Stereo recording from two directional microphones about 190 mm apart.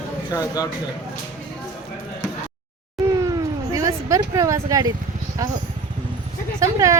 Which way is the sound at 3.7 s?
15° right (ahead or behind).